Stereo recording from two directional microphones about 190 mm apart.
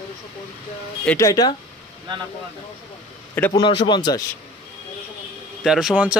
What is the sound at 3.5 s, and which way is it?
Speech, 25° left (ahead or behind).